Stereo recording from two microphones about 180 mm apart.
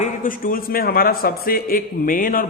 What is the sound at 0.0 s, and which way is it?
A man's voice, 50° left (ahead or behind).